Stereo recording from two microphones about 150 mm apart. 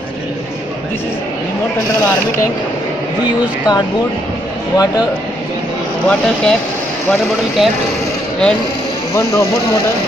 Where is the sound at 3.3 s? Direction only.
30° left (ahead or behind).